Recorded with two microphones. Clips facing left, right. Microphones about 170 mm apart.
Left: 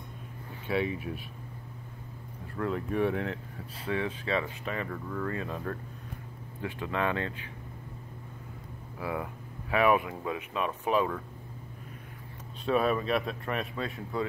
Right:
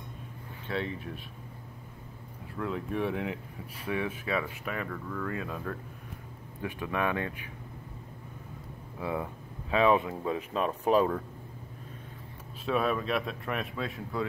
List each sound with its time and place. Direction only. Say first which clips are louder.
0.7 s speech: left 4 dB; 10° left (ahead or behind)
2.5 s speech: left 2 dB; centre (ahead or behind)
3.8 s speech: left 1 dB; 15° right (ahead or behind)
5.3 s speech: left 1 dB; centre (ahead or behind)
6.6 s speech: even; 15° right (ahead or behind)
9.0 s speech: right 1 dB; 25° right (ahead or behind)
12.6 s speech: left 2 dB; centre (ahead or behind)